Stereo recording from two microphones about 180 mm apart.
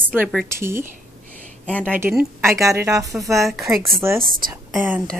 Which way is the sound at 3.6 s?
15° right (ahead or behind).